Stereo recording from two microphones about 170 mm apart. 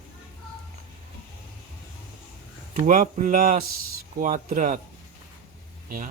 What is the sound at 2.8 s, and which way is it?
Speech, 50° right (ahead or behind).